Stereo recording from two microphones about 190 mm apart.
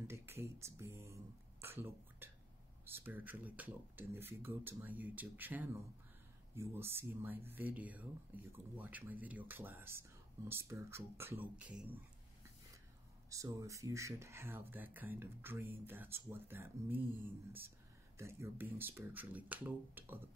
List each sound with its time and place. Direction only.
0.0 s speech: 15° right (ahead or behind)
1.6 s a sound: 10° right (ahead or behind)
2.8 s speech: 10° right (ahead or behind)
13.3 s speech: 15° right (ahead or behind)